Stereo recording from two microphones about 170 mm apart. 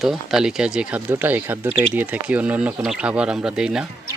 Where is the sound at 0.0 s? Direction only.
Centre (ahead or behind).